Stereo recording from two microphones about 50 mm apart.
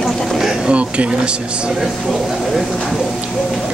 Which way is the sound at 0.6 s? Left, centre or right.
Right.